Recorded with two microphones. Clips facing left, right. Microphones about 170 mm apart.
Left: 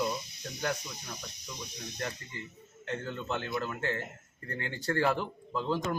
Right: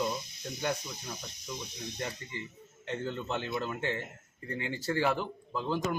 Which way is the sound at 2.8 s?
25° right (ahead or behind).